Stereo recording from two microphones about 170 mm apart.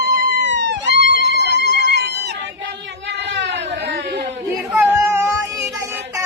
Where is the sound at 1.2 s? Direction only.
80° right.